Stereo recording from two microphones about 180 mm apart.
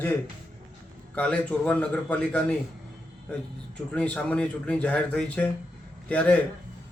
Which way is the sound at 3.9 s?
5° left (ahead or behind).